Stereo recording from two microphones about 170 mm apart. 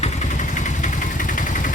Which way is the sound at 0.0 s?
45° left (ahead or behind).